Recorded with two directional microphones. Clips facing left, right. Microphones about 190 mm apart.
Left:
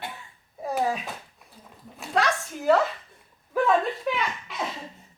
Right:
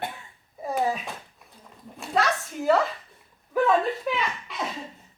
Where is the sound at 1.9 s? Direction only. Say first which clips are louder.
Even; centre (ahead or behind).